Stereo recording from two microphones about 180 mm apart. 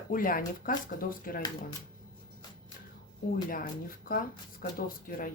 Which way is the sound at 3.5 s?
50° left (ahead or behind).